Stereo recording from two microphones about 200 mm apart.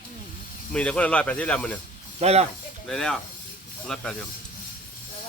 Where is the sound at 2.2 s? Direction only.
30° right (ahead or behind).